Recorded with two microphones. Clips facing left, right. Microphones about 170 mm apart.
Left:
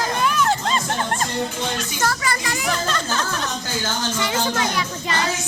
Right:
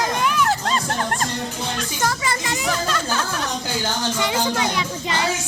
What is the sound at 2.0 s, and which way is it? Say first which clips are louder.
Speech: even; 20° right (ahead or behind).